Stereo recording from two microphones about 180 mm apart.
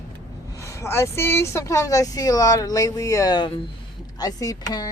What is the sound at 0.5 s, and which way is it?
Speech, 15° left (ahead or behind).